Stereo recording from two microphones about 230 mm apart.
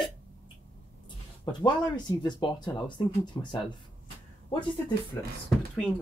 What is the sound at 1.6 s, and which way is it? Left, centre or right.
Speech, centre.